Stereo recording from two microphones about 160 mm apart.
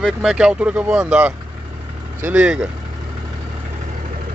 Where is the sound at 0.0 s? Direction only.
5° right (ahead or behind).